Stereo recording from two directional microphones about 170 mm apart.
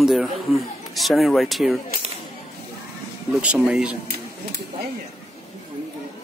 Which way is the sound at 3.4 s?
5° right (ahead or behind).